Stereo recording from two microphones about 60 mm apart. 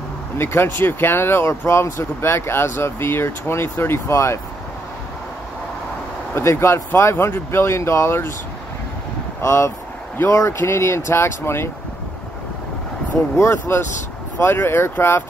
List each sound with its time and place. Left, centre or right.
0.4 s speech: left
6.3 s speech: left
9.4 s speech: left
13.4 s speech: left